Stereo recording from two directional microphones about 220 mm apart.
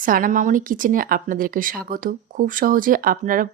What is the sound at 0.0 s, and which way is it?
Speech, 40° right (ahead or behind).